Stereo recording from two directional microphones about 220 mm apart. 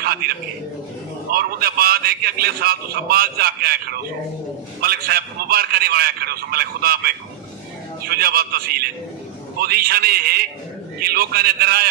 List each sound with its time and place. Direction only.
0.0 s a man's voice: 45° right (ahead or behind)